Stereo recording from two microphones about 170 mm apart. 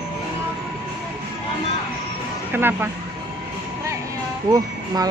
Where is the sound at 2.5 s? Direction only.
10° right (ahead or behind).